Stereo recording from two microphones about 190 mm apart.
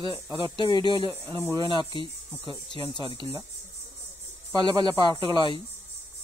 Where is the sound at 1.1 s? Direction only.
10° right (ahead or behind).